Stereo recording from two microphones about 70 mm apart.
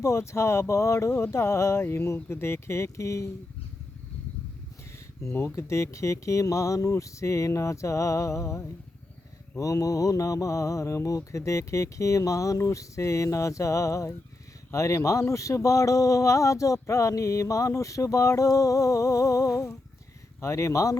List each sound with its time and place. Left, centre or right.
0.0 s speech: left
5.5 s speech: left